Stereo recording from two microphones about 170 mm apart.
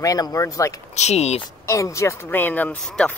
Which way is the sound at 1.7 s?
20° left (ahead or behind).